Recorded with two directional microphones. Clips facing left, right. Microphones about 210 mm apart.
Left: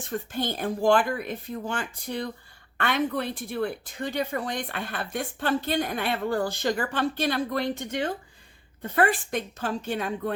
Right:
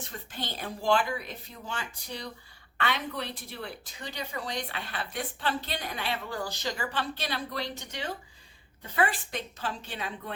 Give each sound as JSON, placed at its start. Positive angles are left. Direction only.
{"t": 0.0, "sound": "speech", "side_deg": 50}